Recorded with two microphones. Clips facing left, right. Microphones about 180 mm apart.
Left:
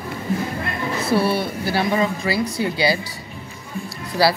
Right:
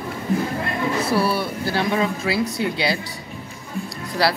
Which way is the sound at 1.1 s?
25° left (ahead or behind).